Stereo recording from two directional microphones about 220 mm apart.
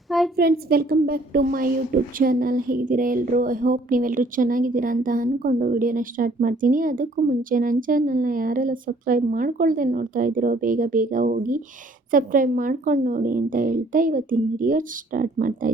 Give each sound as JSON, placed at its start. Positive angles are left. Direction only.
{"t": 0.3, "sound": "a woman's voice", "side_deg": -45}